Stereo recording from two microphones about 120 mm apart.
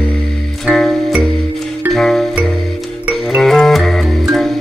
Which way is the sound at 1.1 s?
10° right (ahead or behind).